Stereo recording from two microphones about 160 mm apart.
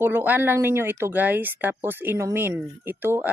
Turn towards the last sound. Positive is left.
turn(degrees=-15)  # may be behind; listen again after turning